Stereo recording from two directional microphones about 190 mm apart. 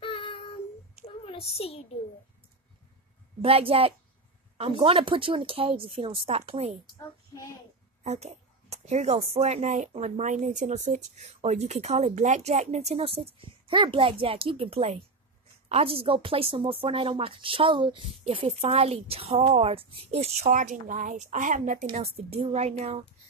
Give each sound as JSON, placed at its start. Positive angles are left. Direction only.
{"t": 0.0, "sound": "child singing", "side_deg": 25}
{"t": 1.2, "sound": "a child's voice", "side_deg": 30}
{"t": 3.4, "sound": "a woman's voice", "side_deg": -30}
{"t": 8.0, "sound": "a woman's voice", "side_deg": -35}